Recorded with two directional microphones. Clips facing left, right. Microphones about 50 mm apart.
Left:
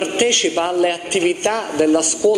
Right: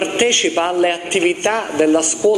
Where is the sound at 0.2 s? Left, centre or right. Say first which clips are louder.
Right 1 dB; right.